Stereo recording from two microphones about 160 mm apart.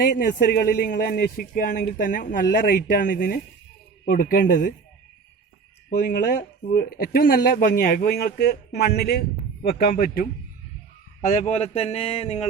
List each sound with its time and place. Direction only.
0.0 s speech: 80° left; by 4.7 s 60° left (ahead or behind)
6.1 s speech: 65° left (ahead or behind)
9.8 s speech: 65° left (ahead or behind)
11.3 s speech: 45° left (ahead or behind)